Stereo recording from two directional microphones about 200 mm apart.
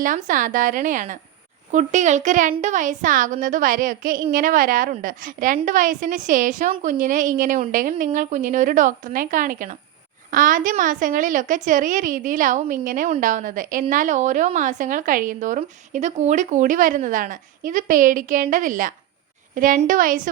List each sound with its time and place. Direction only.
0.0 s a child's voice: 40° right (ahead or behind)